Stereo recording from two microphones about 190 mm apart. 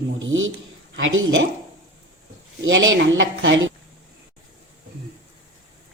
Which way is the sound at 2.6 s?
85° right.